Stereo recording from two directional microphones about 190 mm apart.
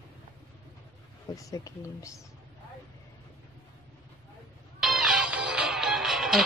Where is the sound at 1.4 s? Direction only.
15° left (ahead or behind).